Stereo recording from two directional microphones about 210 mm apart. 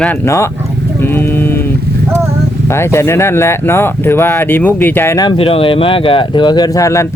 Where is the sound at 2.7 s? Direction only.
10° left (ahead or behind).